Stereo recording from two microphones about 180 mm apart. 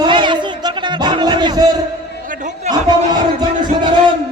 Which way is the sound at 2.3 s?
40° right (ahead or behind).